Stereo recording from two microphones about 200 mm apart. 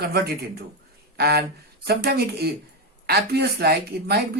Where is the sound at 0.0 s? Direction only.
50° right (ahead or behind).